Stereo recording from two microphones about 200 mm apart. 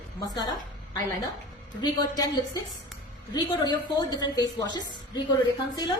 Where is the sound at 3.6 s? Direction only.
20° left (ahead or behind).